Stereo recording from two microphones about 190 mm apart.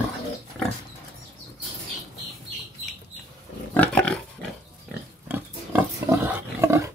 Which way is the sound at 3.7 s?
5° left (ahead or behind).